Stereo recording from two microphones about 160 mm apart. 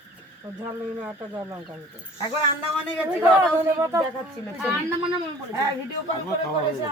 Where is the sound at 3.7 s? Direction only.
15° right (ahead or behind).